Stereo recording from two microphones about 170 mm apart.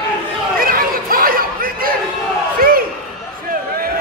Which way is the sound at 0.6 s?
55° right (ahead or behind).